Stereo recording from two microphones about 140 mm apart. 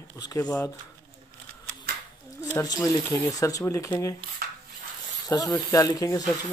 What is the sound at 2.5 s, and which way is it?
A woman's voice, 25° left (ahead or behind).